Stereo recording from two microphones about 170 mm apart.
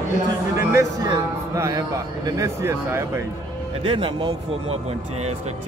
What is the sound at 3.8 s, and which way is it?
Speech, 30° right (ahead or behind).